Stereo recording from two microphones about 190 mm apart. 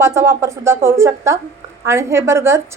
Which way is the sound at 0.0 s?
15° right (ahead or behind).